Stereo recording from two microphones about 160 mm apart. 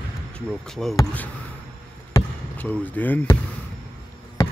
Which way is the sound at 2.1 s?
10° left (ahead or behind).